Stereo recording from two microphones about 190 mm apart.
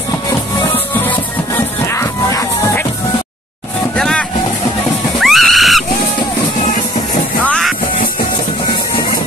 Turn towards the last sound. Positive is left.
turn(degrees=0)  # may be behind; listen again after turning